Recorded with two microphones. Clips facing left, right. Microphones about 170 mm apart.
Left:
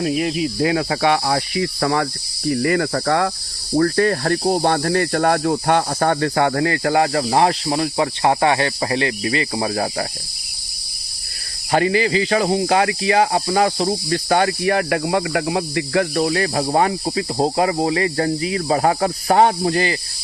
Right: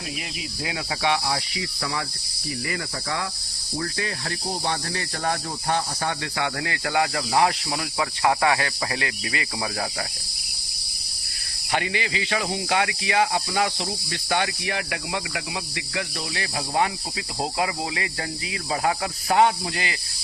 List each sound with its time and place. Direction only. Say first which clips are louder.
0.0 s cricket: left 15 dB; 55° left (ahead or behind)
3.8 s speech: left 14 dB; 55° left (ahead or behind); by 9.8 s 35° left (ahead or behind)
11.7 s speech: left 10 dB; 40° left (ahead or behind)